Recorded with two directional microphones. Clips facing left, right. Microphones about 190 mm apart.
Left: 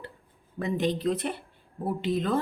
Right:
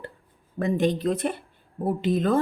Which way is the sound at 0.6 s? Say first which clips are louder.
Right 4 dB; 50° right (ahead or behind).